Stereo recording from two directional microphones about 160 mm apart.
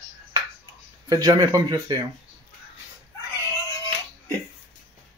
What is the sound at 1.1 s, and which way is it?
Speech, 25° right (ahead or behind).